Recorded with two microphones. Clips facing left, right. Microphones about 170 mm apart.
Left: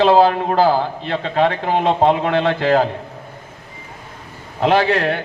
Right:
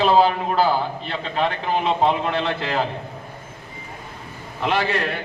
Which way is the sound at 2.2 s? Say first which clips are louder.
Left 6 dB; 60° left (ahead or behind).